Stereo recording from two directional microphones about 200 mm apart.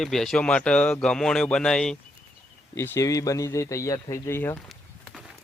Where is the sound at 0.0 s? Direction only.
Centre (ahead or behind).